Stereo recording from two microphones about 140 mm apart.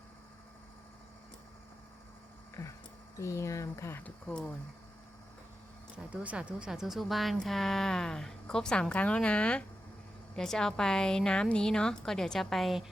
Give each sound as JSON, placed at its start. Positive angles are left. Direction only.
{"t": 3.2, "sound": "speech", "side_deg": 20}
{"t": 4.3, "sound": "speech", "side_deg": 5}
{"t": 6.0, "sound": "speech", "side_deg": -5}